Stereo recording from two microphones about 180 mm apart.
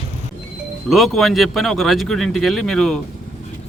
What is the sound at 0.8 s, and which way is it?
Speech, centre (ahead or behind).